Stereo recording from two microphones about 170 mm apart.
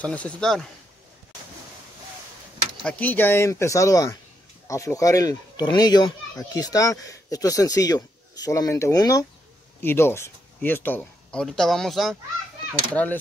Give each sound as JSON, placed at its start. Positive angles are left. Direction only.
{"t": 0.0, "sound": "speech", "side_deg": 10}
{"t": 2.8, "sound": "speech", "side_deg": 5}